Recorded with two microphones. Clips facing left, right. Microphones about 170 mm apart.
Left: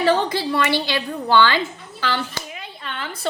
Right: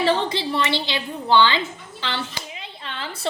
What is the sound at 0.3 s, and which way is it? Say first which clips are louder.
A woman's voice: left 3 dB; 25° right (ahead or behind).